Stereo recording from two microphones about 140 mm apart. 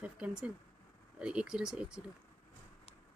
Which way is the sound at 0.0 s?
10° right (ahead or behind).